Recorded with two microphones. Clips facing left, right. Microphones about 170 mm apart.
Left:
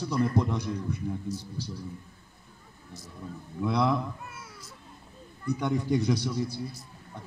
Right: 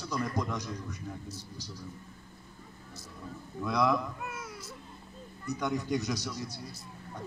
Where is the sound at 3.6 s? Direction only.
30° left (ahead or behind).